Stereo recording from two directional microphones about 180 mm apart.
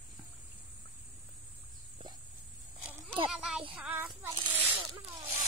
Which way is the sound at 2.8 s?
5° right (ahead or behind).